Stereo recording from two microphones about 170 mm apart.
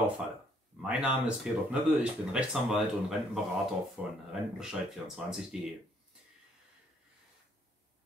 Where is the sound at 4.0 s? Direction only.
5° right (ahead or behind).